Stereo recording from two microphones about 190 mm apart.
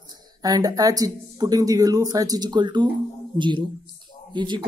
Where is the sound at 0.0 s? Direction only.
20° right (ahead or behind).